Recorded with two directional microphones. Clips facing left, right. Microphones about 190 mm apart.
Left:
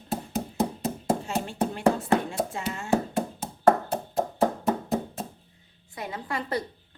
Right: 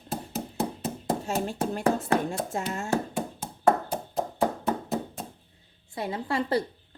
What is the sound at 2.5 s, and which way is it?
Speech, 45° right (ahead or behind).